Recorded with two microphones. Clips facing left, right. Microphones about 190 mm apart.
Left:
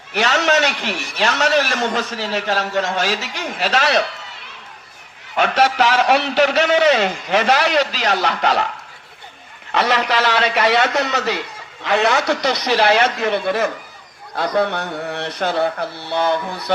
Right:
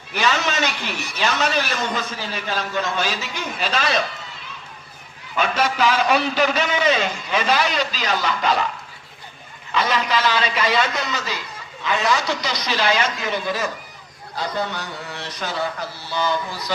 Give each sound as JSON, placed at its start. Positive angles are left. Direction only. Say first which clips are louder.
{"t": 0.1, "sound": "a man's voice", "louder": "left 5 dB", "side_deg": 70}
{"t": 5.4, "sound": "a man's voice", "louder": "left 4 dB", "side_deg": 70}
{"t": 9.7, "sound": "a man's voice", "louder": "left 3 dB", "side_deg": 70}